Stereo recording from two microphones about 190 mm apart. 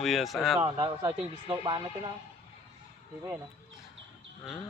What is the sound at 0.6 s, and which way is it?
Speech, 25° right (ahead or behind).